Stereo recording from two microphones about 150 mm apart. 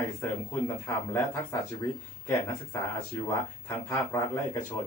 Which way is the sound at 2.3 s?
25° left (ahead or behind).